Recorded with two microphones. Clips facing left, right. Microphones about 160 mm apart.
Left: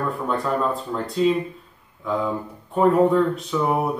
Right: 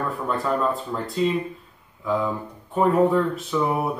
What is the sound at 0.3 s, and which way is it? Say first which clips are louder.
Speech: even; centre (ahead or behind).